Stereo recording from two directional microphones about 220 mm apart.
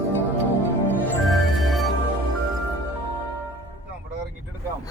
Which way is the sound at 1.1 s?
Centre (ahead or behind).